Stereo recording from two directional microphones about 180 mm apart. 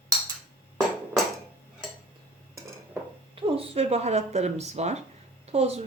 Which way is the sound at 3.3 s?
30° right (ahead or behind).